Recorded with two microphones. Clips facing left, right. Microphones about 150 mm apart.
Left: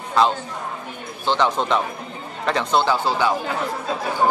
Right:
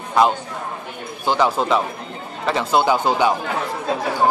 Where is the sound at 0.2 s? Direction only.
15° right (ahead or behind).